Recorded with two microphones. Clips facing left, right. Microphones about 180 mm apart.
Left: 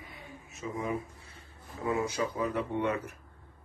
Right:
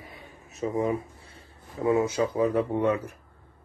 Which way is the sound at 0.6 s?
35° right (ahead or behind).